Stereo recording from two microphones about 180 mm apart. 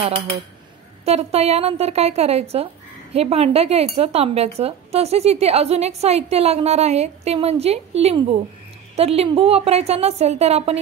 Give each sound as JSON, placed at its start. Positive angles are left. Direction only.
{"t": 1.0, "sound": "a woman's voice", "side_deg": -35}